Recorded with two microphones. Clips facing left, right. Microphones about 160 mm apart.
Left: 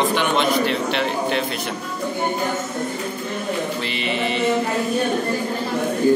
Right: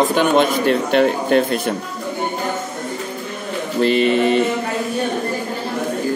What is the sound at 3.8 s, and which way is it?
Speech, 45° right (ahead or behind).